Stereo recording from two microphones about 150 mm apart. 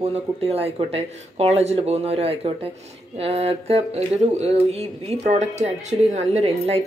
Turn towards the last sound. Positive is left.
turn(degrees=-45)  # may be behind; listen again after turning